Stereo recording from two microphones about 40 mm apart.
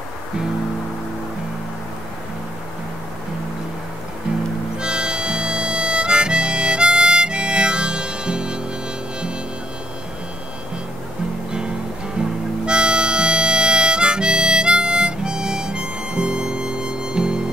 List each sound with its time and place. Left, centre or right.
4.7 s harmonica: right
12.2 s music: right
12.6 s harmonica: right